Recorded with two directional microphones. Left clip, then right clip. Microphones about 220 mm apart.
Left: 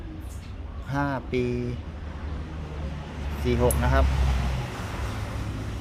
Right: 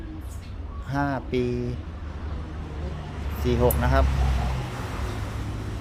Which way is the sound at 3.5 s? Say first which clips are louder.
Right 1 dB; 5° right (ahead or behind).